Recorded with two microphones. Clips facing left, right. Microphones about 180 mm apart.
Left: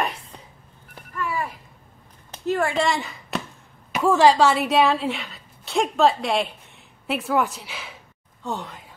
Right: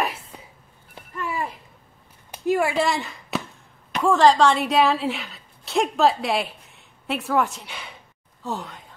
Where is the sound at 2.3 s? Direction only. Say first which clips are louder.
Right 1 dB; 10° right (ahead or behind).